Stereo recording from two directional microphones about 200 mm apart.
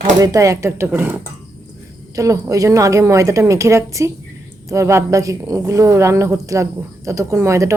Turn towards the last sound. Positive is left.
turn(degrees=-15)  # may be behind; listen again after turning